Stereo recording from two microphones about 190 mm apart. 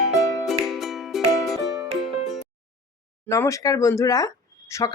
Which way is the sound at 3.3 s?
15° left (ahead or behind).